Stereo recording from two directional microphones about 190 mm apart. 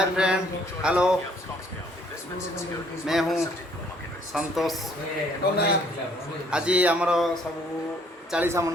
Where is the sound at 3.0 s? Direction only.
Centre (ahead or behind).